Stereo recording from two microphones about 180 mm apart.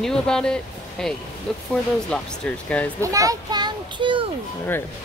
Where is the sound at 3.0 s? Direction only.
20° right (ahead or behind).